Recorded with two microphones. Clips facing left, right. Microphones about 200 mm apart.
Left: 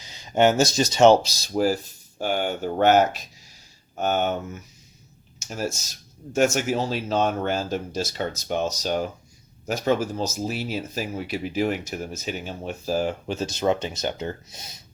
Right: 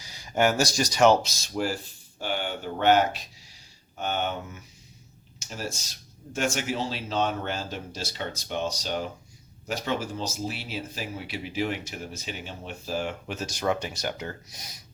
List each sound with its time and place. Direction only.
0.0 s speech: 20° left (ahead or behind); by 4.4 s 45° left (ahead or behind)
5.4 s speech: 45° left (ahead or behind); by 14.8 s 25° left (ahead or behind)